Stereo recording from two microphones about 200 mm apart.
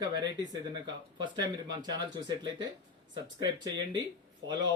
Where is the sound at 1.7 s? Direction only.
20° right (ahead or behind).